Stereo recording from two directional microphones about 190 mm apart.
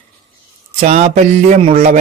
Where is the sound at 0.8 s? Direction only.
35° right (ahead or behind).